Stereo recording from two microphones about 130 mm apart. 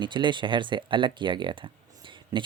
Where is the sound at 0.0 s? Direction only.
35° right (ahead or behind).